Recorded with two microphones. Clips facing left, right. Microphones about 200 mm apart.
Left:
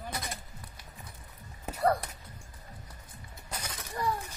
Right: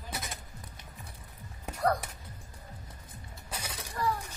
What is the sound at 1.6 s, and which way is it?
Music, 5° left (ahead or behind).